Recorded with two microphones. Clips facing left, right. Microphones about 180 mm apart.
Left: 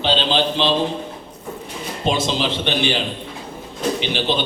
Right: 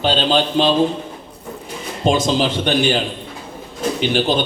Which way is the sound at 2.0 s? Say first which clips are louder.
Right 4 dB; 45° right (ahead or behind).